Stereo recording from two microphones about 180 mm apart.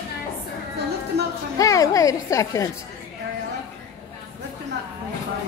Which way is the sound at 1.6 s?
20° left (ahead or behind).